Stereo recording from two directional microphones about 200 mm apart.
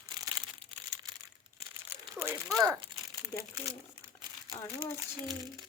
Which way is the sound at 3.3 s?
20° left (ahead or behind).